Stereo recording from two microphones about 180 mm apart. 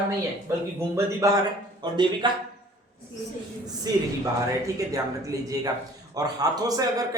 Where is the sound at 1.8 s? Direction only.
25° right (ahead or behind).